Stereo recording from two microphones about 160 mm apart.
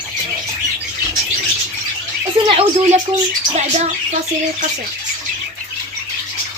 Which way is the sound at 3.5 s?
45° right (ahead or behind).